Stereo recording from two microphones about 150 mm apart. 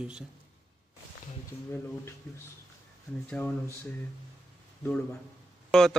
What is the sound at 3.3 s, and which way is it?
Speech, 5° left (ahead or behind).